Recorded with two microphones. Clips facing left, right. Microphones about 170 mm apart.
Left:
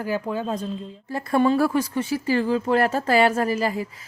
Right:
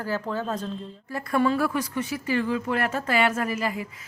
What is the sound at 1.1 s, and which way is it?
Speech, 30° left (ahead or behind).